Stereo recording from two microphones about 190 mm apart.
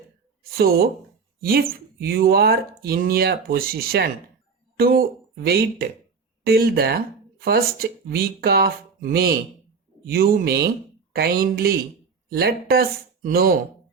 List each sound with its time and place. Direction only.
0.5 s speech: 55° right (ahead or behind)